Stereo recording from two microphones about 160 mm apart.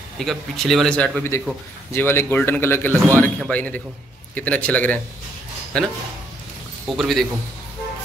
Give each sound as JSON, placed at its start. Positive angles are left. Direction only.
{"t": 0.2, "sound": "a man's voice", "side_deg": 0}